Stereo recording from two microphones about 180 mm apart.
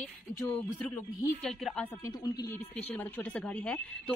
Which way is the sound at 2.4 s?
10° left (ahead or behind).